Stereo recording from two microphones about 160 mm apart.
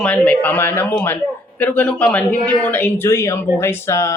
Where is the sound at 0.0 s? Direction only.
10° left (ahead or behind).